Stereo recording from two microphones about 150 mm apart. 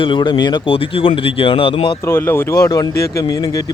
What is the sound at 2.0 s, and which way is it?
Speech, 15° left (ahead or behind).